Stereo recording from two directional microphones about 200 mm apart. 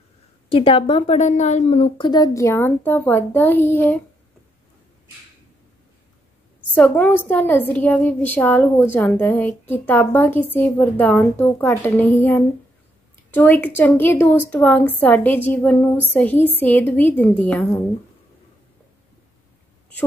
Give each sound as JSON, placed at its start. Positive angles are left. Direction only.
{"t": 0.5, "sound": "a woman's voice", "side_deg": 25}
{"t": 6.7, "sound": "speech", "side_deg": 10}